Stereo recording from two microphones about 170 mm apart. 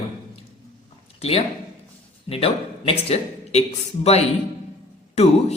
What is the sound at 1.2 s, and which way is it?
Speech, 35° left (ahead or behind).